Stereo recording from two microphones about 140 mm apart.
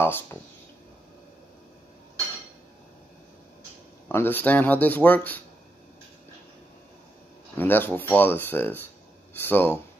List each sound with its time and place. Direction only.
0.0 s speech: 15° left (ahead or behind)
4.1 s speech: 15° left (ahead or behind)
7.5 s speech: 15° left (ahead or behind)